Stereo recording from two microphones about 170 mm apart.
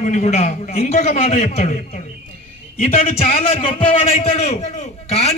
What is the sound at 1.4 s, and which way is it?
A man's voice, 40° left (ahead or behind).